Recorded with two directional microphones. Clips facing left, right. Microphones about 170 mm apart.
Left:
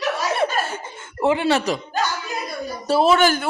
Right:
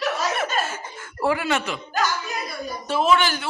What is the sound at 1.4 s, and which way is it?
Speech, 35° left (ahead or behind).